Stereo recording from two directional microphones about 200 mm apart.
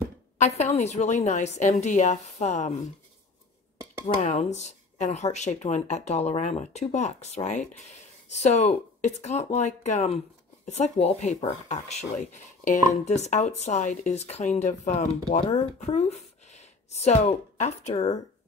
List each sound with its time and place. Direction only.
0.4 s speech: 35° left (ahead or behind)
4.2 s speech: 35° left (ahead or behind)